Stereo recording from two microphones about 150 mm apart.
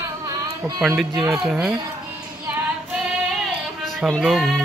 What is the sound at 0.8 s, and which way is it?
Speech, centre (ahead or behind).